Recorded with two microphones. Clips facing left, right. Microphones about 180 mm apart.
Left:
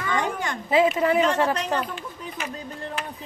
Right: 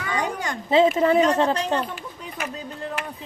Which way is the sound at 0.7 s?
25° right (ahead or behind).